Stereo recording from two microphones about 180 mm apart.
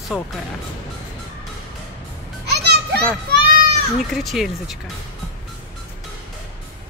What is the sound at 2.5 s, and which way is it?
Children playing, 65° right (ahead or behind).